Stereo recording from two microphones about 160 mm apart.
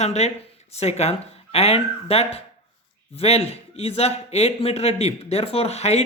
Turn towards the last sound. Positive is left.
turn(degrees=40)  # may be behind; listen again after turning